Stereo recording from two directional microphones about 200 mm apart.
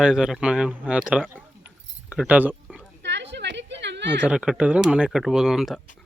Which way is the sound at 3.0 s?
60° right (ahead or behind).